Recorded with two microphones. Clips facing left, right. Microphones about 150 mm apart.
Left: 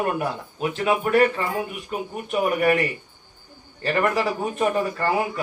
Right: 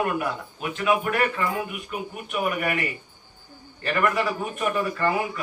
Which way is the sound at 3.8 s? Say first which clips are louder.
Left 2 dB; 35° left (ahead or behind).